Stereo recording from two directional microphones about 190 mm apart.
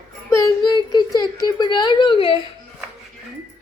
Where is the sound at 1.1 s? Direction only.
20° left (ahead or behind).